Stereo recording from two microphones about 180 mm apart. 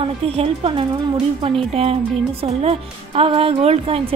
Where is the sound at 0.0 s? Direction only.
30° right (ahead or behind).